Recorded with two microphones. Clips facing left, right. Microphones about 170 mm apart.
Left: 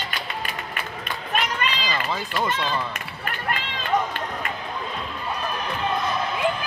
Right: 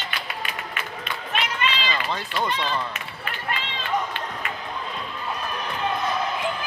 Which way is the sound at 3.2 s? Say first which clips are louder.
Left 2 dB; 50° left (ahead or behind).